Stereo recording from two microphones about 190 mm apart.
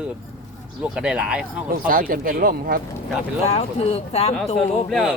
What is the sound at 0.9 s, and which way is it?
Speech, 5° right (ahead or behind).